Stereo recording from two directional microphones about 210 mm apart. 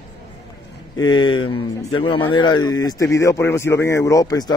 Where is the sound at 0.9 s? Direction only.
20° left (ahead or behind).